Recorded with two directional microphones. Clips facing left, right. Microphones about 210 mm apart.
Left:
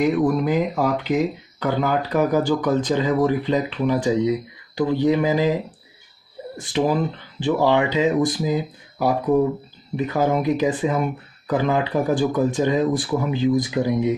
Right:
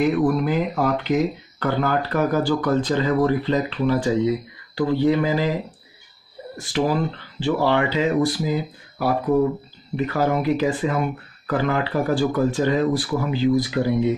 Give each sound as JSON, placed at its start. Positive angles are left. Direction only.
{"t": 0.1, "sound": "speech", "side_deg": 10}
{"t": 6.5, "sound": "speech", "side_deg": 20}